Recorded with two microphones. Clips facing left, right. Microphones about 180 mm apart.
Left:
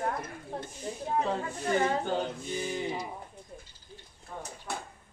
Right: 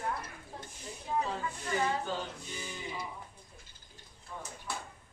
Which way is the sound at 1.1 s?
55° left (ahead or behind).